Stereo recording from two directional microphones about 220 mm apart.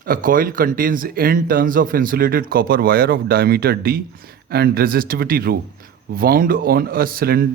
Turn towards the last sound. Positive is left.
turn(degrees=-45)  # may be behind; listen again after turning